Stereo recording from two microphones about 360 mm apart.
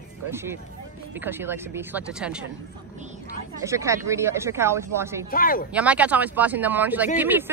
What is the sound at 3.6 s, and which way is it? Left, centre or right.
Speech, centre.